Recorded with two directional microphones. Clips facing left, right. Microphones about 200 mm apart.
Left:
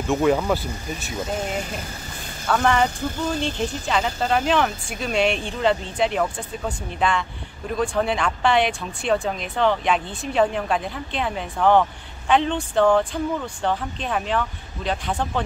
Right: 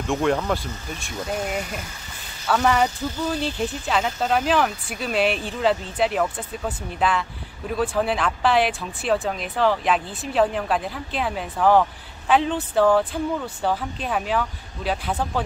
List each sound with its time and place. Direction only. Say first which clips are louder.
0.0 s speech: left 2 dB; 5° left (ahead or behind)
2.4 s speech: even; 5° right (ahead or behind)